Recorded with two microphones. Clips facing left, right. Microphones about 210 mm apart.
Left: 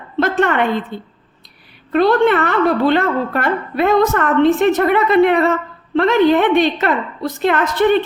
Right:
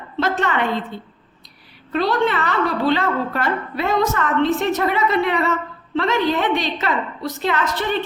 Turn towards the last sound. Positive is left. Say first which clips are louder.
# left 8 dB
turn(degrees=55)  # may be behind; listen again after turning